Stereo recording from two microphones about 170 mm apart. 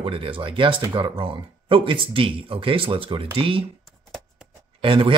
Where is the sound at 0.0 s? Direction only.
30° right (ahead or behind).